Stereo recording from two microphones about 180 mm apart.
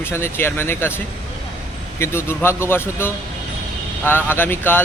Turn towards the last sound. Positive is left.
turn(degrees=10)  # may be behind; listen again after turning